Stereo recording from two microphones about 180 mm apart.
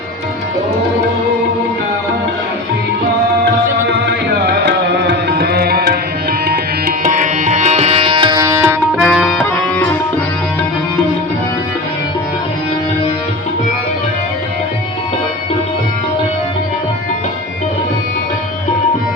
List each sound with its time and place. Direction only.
4.0 s music: 65° right (ahead or behind)
6.5 s tabla: 50° right (ahead or behind); by 8.8 s 15° right (ahead or behind)
9.0 s music: centre (ahead or behind)